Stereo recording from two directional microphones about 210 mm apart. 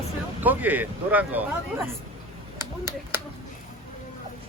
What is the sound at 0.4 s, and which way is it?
Speech, 10° right (ahead or behind).